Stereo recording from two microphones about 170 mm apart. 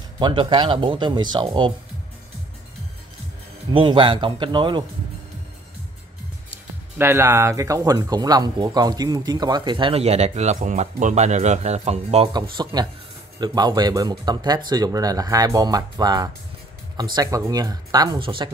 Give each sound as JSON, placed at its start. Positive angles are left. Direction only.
{"t": 0.2, "sound": "speech", "side_deg": -25}
{"t": 3.7, "sound": "speech", "side_deg": -30}
{"t": 7.0, "sound": "speech", "side_deg": -15}
{"t": 12.6, "sound": "speech", "side_deg": -25}